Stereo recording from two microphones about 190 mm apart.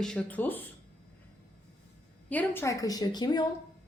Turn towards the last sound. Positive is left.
turn(degrees=20)  # may be behind; listen again after turning